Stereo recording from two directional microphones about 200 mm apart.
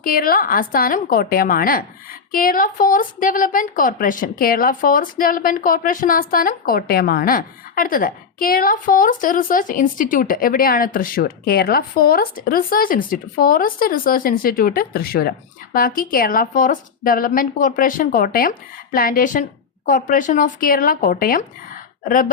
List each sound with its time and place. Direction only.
0.0 s a woman's voice: 45° left (ahead or behind)